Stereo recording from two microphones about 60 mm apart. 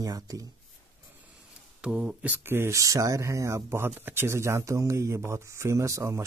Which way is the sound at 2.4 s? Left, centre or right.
Right.